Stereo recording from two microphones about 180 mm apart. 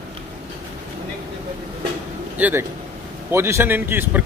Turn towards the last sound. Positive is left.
turn(degrees=-10)  # may be behind; listen again after turning